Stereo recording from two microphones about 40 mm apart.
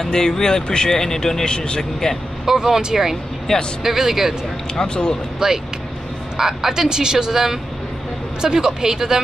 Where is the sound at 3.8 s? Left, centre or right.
Centre.